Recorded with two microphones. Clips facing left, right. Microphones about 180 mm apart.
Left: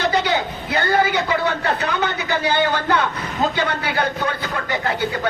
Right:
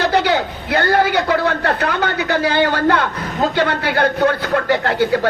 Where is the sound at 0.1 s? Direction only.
60° right (ahead or behind).